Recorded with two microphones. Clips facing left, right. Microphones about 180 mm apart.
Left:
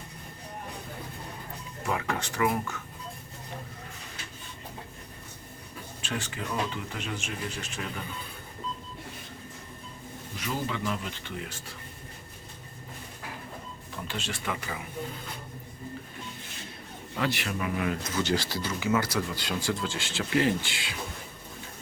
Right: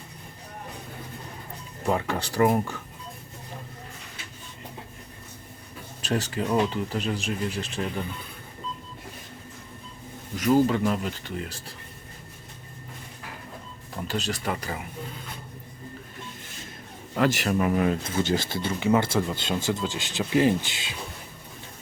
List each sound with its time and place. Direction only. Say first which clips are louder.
1.9 s speech: right 5 dB; 35° right (ahead or behind)
6.0 s speech: right 8 dB; 40° right (ahead or behind)
10.3 s speech: right 12 dB; 45° right (ahead or behind)
13.9 s speech: right 6 dB; 40° right (ahead or behind)
17.2 s speech: right 7 dB; 45° right (ahead or behind); by 20.9 s 20° right (ahead or behind)